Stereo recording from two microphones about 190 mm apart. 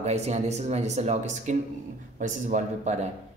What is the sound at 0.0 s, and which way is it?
A man's voice, 35° right (ahead or behind).